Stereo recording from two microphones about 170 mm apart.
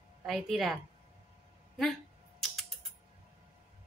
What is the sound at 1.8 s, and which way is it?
Typing, centre (ahead or behind).